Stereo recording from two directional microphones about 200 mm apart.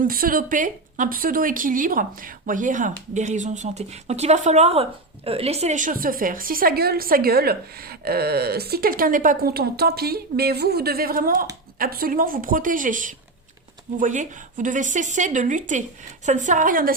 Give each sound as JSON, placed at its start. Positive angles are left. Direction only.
{"t": 0.0, "sound": "speech", "side_deg": -45}